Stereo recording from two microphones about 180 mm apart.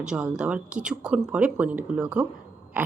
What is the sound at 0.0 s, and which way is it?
A woman's voice, 5° right (ahead or behind).